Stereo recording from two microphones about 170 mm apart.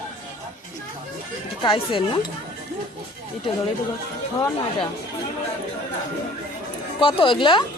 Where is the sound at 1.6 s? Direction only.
30° left (ahead or behind).